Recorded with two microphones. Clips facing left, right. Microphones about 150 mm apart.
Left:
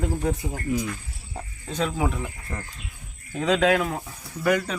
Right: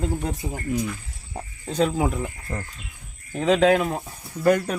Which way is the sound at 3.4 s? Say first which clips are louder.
Right 3 dB; 25° right (ahead or behind).